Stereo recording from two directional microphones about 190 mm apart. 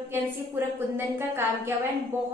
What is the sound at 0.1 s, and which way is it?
A woman's voice, 10° right (ahead or behind).